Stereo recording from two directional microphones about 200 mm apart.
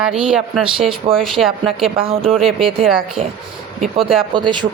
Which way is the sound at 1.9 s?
30° right (ahead or behind).